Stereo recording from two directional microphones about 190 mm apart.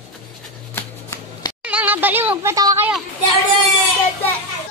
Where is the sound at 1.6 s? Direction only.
5° right (ahead or behind).